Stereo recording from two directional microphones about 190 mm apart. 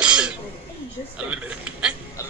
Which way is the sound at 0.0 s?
5° right (ahead or behind).